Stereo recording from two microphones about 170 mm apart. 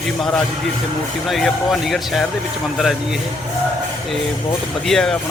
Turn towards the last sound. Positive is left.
turn(degrees=5)  # may be behind; listen again after turning